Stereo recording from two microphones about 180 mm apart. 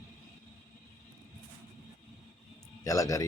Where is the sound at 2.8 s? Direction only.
20° left (ahead or behind).